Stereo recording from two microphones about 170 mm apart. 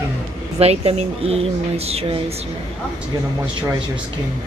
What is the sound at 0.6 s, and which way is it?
Speech, 40° right (ahead or behind).